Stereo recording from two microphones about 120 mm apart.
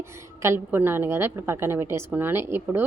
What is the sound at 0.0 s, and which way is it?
A woman's voice, 20° right (ahead or behind).